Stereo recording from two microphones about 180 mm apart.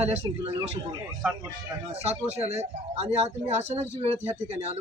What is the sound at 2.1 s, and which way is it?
Speech, 35° right (ahead or behind).